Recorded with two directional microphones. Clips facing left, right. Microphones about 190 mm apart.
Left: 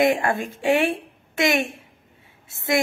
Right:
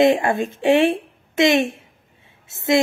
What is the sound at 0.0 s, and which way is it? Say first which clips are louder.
Speech: right 4 dB; 25° right (ahead or behind).